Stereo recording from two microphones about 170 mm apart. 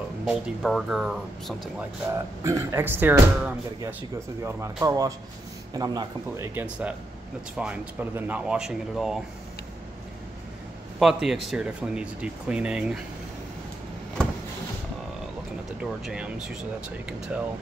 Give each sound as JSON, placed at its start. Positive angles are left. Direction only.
{"t": 0.2, "sound": "speech", "side_deg": 0}
{"t": 1.8, "sound": "speech", "side_deg": -15}
{"t": 11.0, "sound": "speech", "side_deg": 0}
{"t": 15.8, "sound": "speech", "side_deg": -5}